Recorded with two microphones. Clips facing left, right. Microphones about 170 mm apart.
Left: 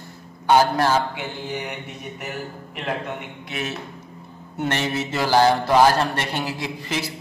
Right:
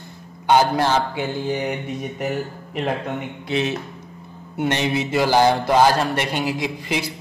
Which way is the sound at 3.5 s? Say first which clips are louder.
Right 8 dB; 25° right (ahead or behind).